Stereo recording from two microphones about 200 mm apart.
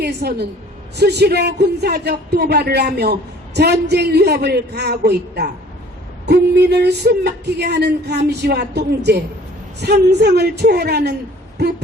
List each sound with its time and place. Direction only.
0.0 s a woman's voice: 55° right (ahead or behind)